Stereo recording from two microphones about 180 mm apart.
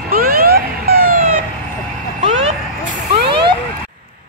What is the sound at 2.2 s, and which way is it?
Vehicle, 40° right (ahead or behind).